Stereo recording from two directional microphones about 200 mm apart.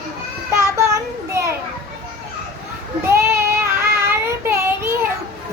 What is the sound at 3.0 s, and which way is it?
Child singing, 15° right (ahead or behind).